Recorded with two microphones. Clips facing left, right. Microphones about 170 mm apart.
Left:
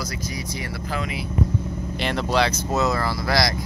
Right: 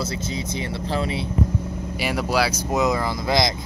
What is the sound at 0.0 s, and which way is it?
Speech, 25° right (ahead or behind).